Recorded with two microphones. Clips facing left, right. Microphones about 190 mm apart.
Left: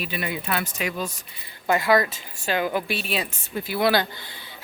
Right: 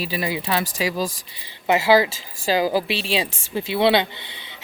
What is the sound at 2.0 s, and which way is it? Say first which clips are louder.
Speech: right 3 dB; 90° right.